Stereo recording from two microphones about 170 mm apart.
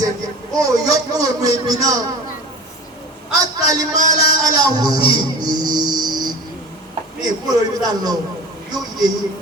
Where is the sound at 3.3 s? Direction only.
20° right (ahead or behind).